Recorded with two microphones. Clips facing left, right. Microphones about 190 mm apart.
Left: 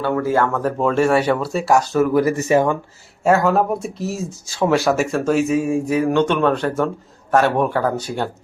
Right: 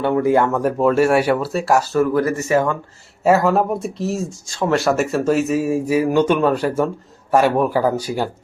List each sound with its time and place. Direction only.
0.0 s speech: 20° right (ahead or behind); by 2.0 s centre (ahead or behind)
2.1 s speech: 15° left (ahead or behind)
3.2 s speech: centre (ahead or behind)